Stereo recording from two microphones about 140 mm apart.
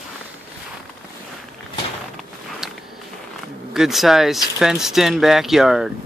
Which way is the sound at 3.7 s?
Centre (ahead or behind).